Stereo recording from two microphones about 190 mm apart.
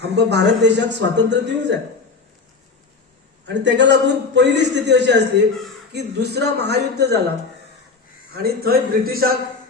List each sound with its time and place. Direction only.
0.0 s a man's voice: 65° right (ahead or behind)
3.4 s a man's voice: 70° right (ahead or behind)
8.4 s a man's voice: 55° right (ahead or behind)